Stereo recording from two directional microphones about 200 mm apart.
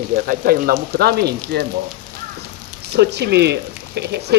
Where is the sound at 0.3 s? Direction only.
45° right (ahead or behind).